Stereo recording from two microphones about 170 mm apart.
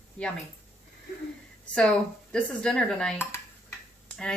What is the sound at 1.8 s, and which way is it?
Speech, 5° left (ahead or behind).